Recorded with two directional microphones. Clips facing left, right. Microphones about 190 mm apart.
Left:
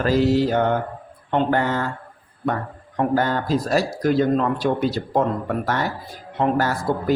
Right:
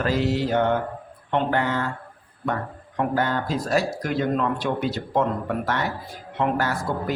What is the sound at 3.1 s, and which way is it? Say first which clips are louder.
A man's voice: left 4 dB; 40° left (ahead or behind).